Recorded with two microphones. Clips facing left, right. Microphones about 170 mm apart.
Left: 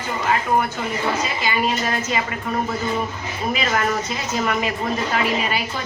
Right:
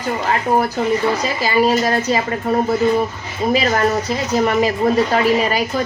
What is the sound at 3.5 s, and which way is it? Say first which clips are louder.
A woman's voice: right 5 dB; 35° right (ahead or behind).